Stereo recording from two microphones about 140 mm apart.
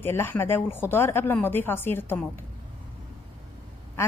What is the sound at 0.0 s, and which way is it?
A woman's voice, 15° left (ahead or behind).